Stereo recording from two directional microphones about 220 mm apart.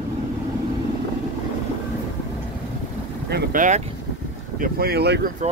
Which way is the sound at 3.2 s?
45° right (ahead or behind).